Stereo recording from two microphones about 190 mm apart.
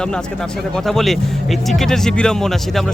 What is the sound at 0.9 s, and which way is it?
Speech, centre (ahead or behind).